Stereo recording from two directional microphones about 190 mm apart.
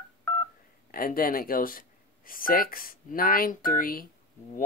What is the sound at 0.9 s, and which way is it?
Speech, 50° left (ahead or behind).